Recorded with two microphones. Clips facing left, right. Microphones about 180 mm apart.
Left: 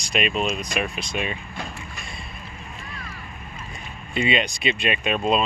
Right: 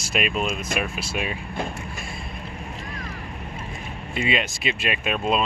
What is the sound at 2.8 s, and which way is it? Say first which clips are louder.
Boat: right 4 dB; 40° right (ahead or behind).